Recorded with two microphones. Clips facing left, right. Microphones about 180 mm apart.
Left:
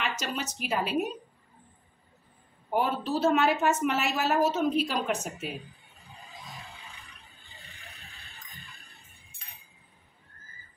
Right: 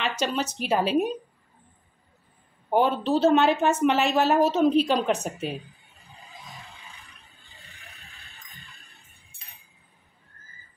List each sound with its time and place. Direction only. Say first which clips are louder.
0.2 s a woman's voice: right 7 dB; 35° right (ahead or behind)
2.7 s a woman's voice: right 6 dB; 30° right (ahead or behind)
7.7 s neigh: right 1 dB; centre (ahead or behind)